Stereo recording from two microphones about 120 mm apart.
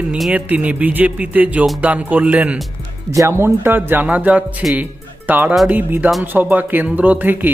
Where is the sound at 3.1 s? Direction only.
25° right (ahead or behind).